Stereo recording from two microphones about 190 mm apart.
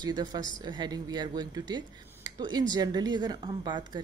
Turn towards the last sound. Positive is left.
turn(degrees=-20)  # may be behind; listen again after turning